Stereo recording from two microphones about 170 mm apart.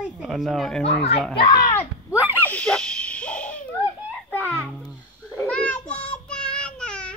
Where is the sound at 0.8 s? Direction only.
35° left (ahead or behind).